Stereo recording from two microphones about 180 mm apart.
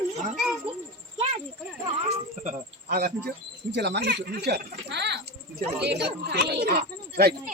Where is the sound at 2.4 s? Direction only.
55° right (ahead or behind).